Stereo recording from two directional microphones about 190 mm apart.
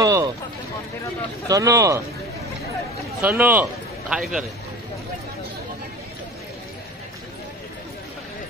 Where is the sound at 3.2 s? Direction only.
10° right (ahead or behind).